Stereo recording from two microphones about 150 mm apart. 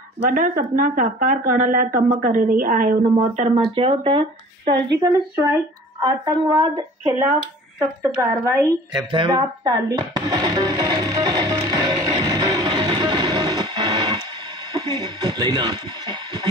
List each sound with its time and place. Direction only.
0.3 s speech: 65° right (ahead or behind); by 3.6 s 50° right (ahead or behind)
3.7 s speech: 40° right (ahead or behind)
4.9 s speech: 15° right (ahead or behind)
8.2 s speech: 20° right (ahead or behind)
9.1 s music: 30° right (ahead or behind)
15.0 s speech: 25° right (ahead or behind)